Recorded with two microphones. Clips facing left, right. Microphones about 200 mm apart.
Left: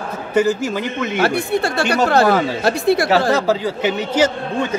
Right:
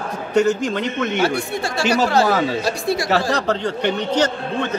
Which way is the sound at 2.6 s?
60° left (ahead or behind).